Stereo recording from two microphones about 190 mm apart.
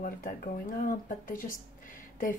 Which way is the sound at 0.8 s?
45° left (ahead or behind).